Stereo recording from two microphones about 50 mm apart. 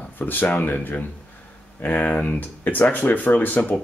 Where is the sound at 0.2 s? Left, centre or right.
Left.